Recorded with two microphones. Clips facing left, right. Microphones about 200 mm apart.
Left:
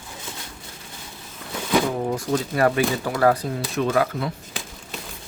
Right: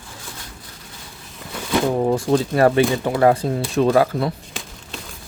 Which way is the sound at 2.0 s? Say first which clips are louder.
Right 6 dB; 35° right (ahead or behind).